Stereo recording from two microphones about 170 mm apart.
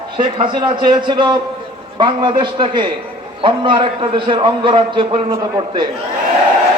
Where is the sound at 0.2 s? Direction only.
30° right (ahead or behind).